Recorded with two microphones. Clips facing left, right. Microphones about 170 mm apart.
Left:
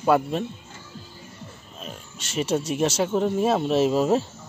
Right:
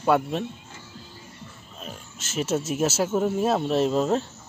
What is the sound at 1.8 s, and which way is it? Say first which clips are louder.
Speech: left 1 dB; centre (ahead or behind).